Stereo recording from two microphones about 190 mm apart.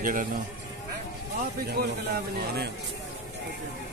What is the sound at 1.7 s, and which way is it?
Speech, 55° right (ahead or behind).